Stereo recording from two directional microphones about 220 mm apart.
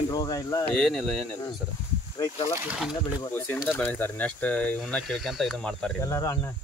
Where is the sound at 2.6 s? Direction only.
5° right (ahead or behind).